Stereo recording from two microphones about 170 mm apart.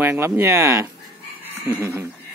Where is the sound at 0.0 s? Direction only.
15° right (ahead or behind).